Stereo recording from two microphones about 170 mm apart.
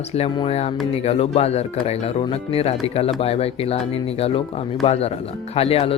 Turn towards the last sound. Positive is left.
turn(degrees=35)  # may be behind; listen again after turning